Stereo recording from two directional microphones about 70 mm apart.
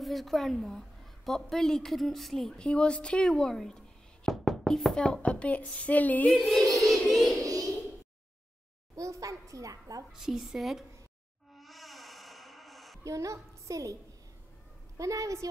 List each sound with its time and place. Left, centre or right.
0.0 s a woman's voice: centre; by 6.3 s left
6.3 s a woman's voice: centre
6.9 s music: centre
7.4 s a sound: right
8.9 s a child's voice: right
10.1 s a woman's voice: centre
11.5 s a sound: centre
13.0 s a woman's voice: right
15.0 s a woman's voice: right